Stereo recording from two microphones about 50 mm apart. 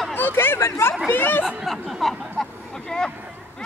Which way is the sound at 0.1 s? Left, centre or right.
Left.